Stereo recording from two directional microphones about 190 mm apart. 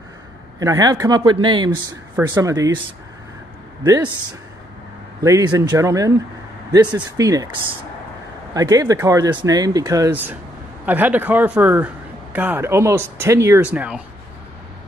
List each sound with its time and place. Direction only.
0.6 s speech: 20° right (ahead or behind)
3.8 s speech: 15° right (ahead or behind)
8.5 s speech: 20° right (ahead or behind)